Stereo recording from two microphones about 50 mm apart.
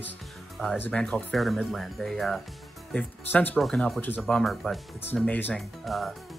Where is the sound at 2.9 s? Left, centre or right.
Left.